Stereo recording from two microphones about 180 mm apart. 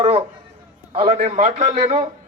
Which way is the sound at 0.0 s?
35° right (ahead or behind).